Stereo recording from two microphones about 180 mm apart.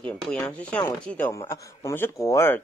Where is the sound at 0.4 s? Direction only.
10° left (ahead or behind).